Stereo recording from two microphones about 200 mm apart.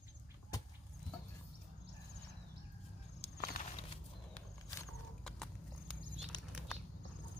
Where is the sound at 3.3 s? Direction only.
45° left (ahead or behind).